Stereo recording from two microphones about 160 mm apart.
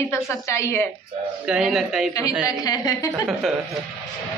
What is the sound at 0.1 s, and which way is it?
Speech, 15° left (ahead or behind).